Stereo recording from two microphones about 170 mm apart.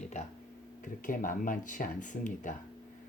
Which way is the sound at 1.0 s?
55° left (ahead or behind).